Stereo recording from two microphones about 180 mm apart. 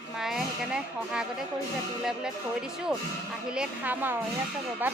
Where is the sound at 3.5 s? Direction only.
5° right (ahead or behind).